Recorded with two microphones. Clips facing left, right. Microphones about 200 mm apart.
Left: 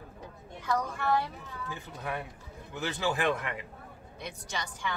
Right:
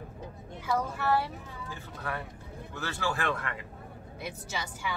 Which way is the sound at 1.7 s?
15° left (ahead or behind).